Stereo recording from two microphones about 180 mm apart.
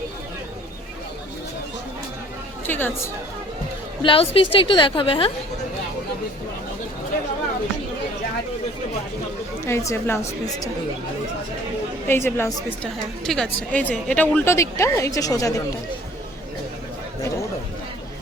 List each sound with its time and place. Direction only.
2.6 s a woman's voice: 10° left (ahead or behind)
4.0 s a woman's voice: 30° left (ahead or behind)
9.6 s a woman's voice: 15° left (ahead or behind)
12.0 s a woman's voice: 10° left (ahead or behind)